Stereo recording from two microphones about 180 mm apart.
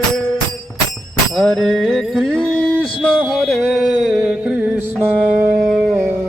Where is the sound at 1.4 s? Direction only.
Centre (ahead or behind).